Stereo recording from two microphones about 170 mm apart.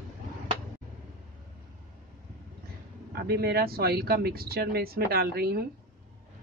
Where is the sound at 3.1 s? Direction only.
65° right (ahead or behind).